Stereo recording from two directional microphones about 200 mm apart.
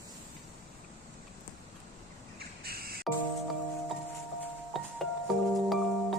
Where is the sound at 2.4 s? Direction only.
50° right (ahead or behind).